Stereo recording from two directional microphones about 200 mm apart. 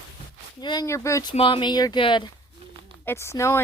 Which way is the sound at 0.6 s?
20° left (ahead or behind).